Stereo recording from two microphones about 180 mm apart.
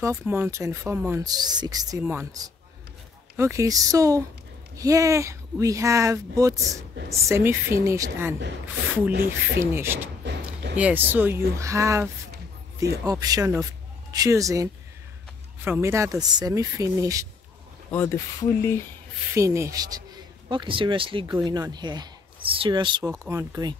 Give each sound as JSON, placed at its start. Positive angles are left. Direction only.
{"t": 0.0, "sound": "speech", "side_deg": -15}
{"t": 9.1, "sound": "speech", "side_deg": -60}
{"t": 9.7, "sound": "speech", "side_deg": -15}
{"t": 17.9, "sound": "speech", "side_deg": 15}
{"t": 19.3, "sound": "a man's voice", "side_deg": -15}